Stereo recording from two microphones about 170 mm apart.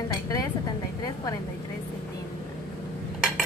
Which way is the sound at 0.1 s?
20° left (ahead or behind).